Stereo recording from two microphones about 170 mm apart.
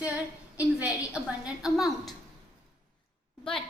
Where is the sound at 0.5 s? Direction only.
10° right (ahead or behind).